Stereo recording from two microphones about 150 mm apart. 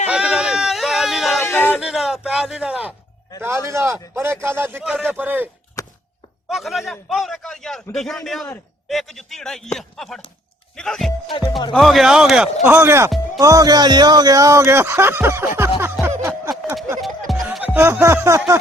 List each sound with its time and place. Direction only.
0.1 s a sound: 5° right (ahead or behind)
1.4 s a sound: 15° left (ahead or behind)
1.8 s a sound: centre (ahead or behind)
3.4 s a man's voice: 15° right (ahead or behind)
4.9 s a man's voice: centre (ahead or behind)
5.8 s a sound: 25° left (ahead or behind)
6.5 s a man's voice: centre (ahead or behind)
11.3 s music: 30° left (ahead or behind)
11.7 s a man's voice: centre (ahead or behind)
12.6 s a man's voice: 15° right (ahead or behind)
15.8 s music: 15° right (ahead or behind)
17.0 s music: centre (ahead or behind); by 18.5 s 20° right (ahead or behind)